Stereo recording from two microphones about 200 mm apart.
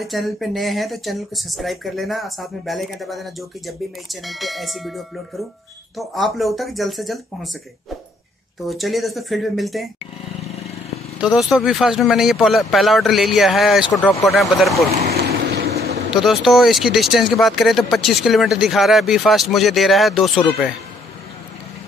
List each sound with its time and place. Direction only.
0.0 s speech: centre (ahead or behind)
8.6 s speech: centre (ahead or behind)
11.1 s speech: centre (ahead or behind)
15.0 s vehicle: 50° right (ahead or behind)
16.1 s speech: centre (ahead or behind)